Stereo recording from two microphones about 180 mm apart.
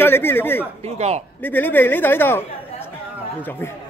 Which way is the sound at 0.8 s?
35° right (ahead or behind).